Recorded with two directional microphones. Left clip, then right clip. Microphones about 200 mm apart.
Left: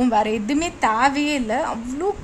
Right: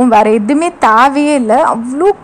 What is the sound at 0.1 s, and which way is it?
A woman's voice, 10° right (ahead or behind).